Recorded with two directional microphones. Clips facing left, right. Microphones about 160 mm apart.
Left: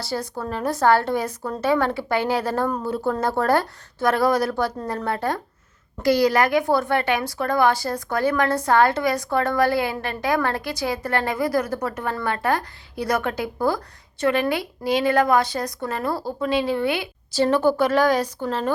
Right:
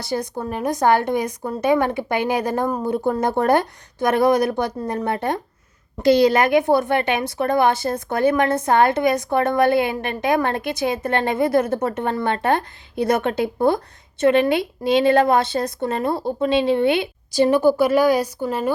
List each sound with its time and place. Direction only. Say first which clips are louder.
0.0 s a woman's voice: right 3 dB; 20° right (ahead or behind)